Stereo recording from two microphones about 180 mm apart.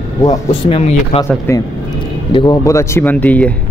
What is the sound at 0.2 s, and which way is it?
Speech, 25° left (ahead or behind).